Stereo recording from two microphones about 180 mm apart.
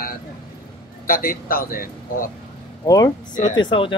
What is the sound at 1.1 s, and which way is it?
A man's voice, 55° left (ahead or behind).